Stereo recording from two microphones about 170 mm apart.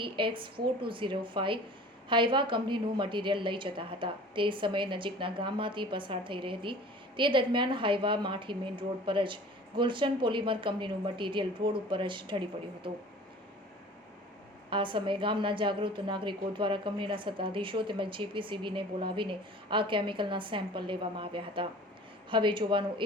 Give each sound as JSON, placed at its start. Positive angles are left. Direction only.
{"t": 0.0, "sound": "a woman's voice", "side_deg": -30}
{"t": 14.7, "sound": "a woman's voice", "side_deg": -30}